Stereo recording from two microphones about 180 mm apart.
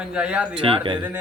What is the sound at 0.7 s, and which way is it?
Speech, 30° right (ahead or behind).